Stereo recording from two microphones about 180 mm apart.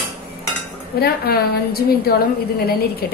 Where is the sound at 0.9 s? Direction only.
60° left (ahead or behind).